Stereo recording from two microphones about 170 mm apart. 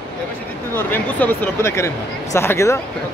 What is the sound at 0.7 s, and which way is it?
Speech, 10° left (ahead or behind).